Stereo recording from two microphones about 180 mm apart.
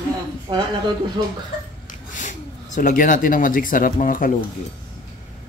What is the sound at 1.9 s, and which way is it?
Speech, 45° left (ahead or behind).